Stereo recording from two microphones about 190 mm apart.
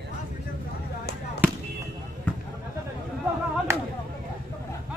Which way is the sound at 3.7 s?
15° right (ahead or behind).